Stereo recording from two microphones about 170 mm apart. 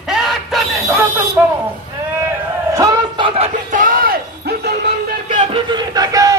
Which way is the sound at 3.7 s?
50° right (ahead or behind).